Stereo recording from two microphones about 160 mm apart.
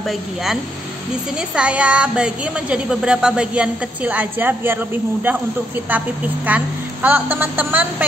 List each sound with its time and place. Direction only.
1.5 s a woman's voice: 5° right (ahead or behind)
5.9 s a woman's voice: 10° right (ahead or behind)